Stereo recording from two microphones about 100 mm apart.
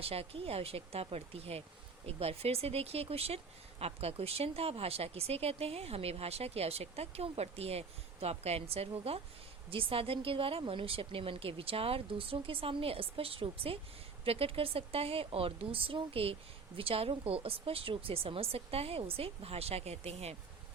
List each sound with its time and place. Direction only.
0.0 s speech: 75° right (ahead or behind)
9.6 s speech: 65° right (ahead or behind); by 20.3 s 90° right